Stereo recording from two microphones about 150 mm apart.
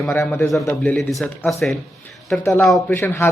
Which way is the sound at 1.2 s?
Centre (ahead or behind).